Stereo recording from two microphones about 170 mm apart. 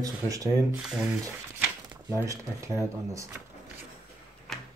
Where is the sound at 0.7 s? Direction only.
5° right (ahead or behind).